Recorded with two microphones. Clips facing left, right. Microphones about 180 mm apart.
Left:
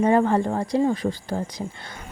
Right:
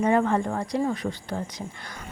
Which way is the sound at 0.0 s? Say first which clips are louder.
Left 3 dB; 35° left (ahead or behind).